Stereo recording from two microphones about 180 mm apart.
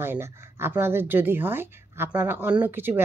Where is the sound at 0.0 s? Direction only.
15° right (ahead or behind).